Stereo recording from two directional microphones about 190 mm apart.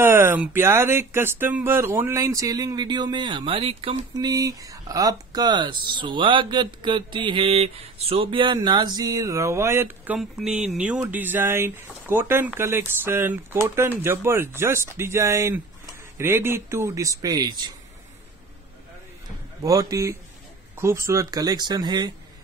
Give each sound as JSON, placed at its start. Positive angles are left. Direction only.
{"t": 0.0, "sound": "speech", "side_deg": -10}
{"t": 19.6, "sound": "speech", "side_deg": -20}